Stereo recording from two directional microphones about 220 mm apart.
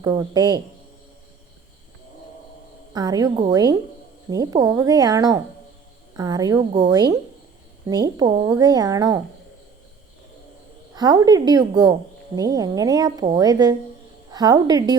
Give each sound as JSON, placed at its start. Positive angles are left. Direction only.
{"t": 0.0, "sound": "a woman's voice", "side_deg": -15}
{"t": 2.9, "sound": "a woman's voice", "side_deg": -15}
{"t": 10.9, "sound": "a woman's voice", "side_deg": -15}